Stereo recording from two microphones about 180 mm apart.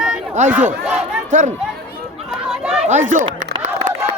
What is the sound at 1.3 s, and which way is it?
Speech, 45° right (ahead or behind).